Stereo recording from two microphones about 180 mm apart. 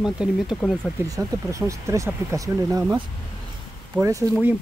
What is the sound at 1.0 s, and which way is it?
Speech, 15° right (ahead or behind).